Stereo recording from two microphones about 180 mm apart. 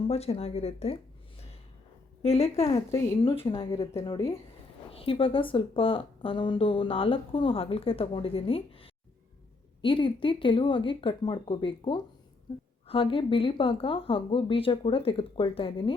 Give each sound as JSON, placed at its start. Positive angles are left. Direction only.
{"t": 0.1, "sound": "speech", "side_deg": 35}
{"t": 2.2, "sound": "a woman's voice", "side_deg": 35}